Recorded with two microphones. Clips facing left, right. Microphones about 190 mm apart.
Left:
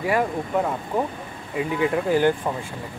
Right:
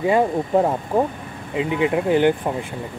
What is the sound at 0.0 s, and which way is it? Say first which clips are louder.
Speech: right 5 dB; 25° right (ahead or behind).